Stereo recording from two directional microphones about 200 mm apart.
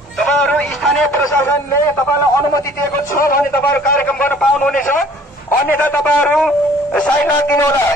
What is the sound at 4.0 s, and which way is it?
A man's voice, 10° left (ahead or behind).